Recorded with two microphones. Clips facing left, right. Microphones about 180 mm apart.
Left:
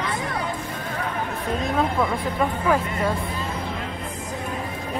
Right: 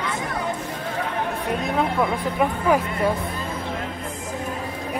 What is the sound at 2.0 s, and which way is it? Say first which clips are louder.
Speech: right 1 dB; 10° right (ahead or behind).